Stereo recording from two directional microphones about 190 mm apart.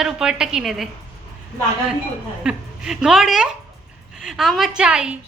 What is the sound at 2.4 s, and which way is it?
A woman's voice, 5° right (ahead or behind).